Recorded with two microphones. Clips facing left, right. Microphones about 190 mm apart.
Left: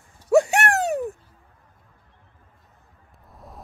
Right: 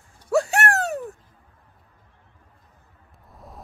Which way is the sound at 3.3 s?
Centre (ahead or behind).